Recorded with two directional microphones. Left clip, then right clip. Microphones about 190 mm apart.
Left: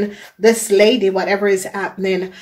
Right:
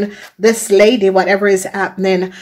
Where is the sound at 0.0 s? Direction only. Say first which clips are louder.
Right 1 dB; 30° right (ahead or behind).